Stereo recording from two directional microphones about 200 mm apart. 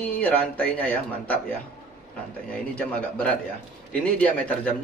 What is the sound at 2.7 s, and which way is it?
A man's voice, 5° left (ahead or behind).